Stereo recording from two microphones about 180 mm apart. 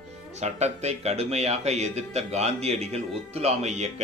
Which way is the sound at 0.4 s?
40° right (ahead or behind).